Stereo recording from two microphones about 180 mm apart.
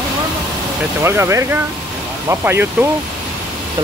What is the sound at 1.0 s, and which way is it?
Speech, 15° right (ahead or behind).